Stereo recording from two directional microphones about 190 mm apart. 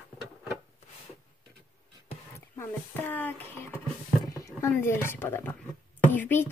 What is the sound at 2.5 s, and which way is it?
A child's voice, 10° left (ahead or behind).